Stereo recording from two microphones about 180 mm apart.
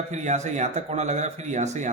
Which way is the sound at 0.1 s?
40° right (ahead or behind).